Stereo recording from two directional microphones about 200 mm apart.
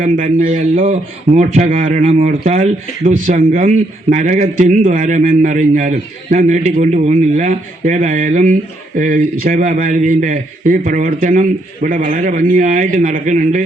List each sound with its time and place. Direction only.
0.0 s speech: 45° right (ahead or behind)